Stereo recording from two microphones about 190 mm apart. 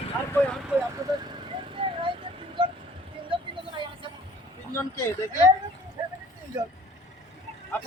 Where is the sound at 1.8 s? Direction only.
25° right (ahead or behind).